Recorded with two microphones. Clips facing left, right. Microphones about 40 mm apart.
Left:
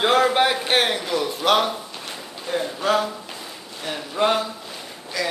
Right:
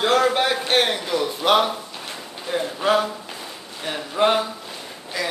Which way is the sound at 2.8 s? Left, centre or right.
Centre.